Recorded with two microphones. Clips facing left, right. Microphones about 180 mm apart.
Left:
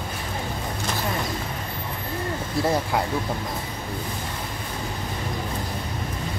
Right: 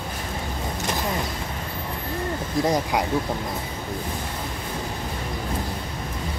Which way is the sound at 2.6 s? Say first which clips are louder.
Even; 15° right (ahead or behind).